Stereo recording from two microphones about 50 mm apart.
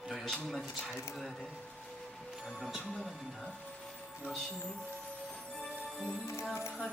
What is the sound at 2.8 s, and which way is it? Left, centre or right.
Speech, centre.